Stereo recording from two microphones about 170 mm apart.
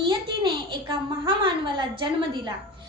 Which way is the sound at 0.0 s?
30° right (ahead or behind).